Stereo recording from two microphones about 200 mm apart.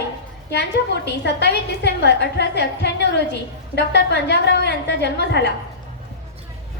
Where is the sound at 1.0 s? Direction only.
60° left (ahead or behind).